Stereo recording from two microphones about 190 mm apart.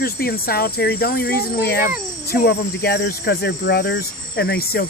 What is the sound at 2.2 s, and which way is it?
Speech, 60° left (ahead or behind).